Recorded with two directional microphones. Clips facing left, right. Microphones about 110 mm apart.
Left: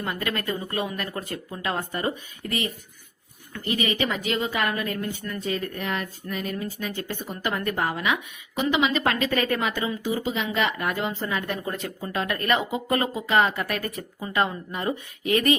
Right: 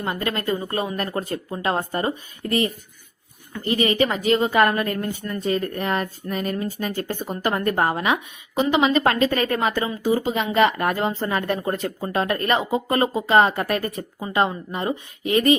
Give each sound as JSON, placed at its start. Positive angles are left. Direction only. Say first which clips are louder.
{"t": 0.0, "sound": "a woman's voice", "louder": "right 3 dB", "side_deg": -30}